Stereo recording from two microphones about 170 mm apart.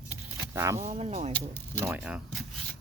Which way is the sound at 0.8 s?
35° right (ahead or behind).